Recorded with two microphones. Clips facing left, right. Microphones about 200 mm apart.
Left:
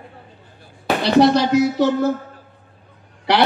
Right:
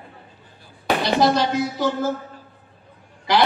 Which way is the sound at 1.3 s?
70° left (ahead or behind).